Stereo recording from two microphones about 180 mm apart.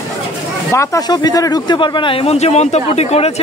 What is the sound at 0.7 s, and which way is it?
A man's voice, 15° left (ahead or behind).